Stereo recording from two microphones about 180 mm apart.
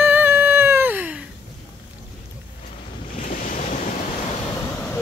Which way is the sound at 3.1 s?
50° left (ahead or behind).